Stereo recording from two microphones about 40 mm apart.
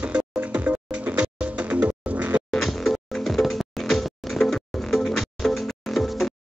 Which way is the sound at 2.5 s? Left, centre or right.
Centre.